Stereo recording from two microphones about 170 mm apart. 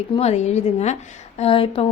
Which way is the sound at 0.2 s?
40° left (ahead or behind).